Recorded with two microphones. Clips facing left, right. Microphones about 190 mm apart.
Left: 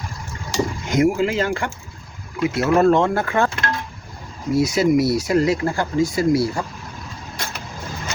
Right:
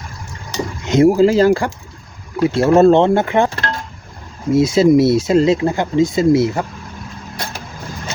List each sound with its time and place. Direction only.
0.9 s speech: 30° right (ahead or behind)